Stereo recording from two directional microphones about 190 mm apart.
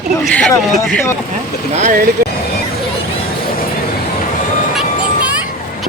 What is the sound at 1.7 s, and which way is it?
Speech, 40° right (ahead or behind).